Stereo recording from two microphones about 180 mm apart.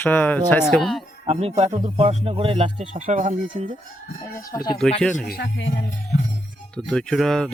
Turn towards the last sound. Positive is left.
turn(degrees=5)  # may be behind; listen again after turning